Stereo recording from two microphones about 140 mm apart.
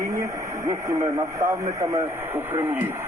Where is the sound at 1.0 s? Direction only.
20° right (ahead or behind).